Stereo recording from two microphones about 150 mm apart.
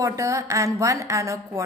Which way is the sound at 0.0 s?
20° right (ahead or behind).